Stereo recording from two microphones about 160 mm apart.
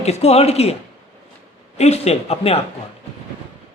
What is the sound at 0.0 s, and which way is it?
Speech, 40° left (ahead or behind).